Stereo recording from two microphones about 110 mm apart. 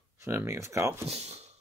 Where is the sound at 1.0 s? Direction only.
70° right (ahead or behind).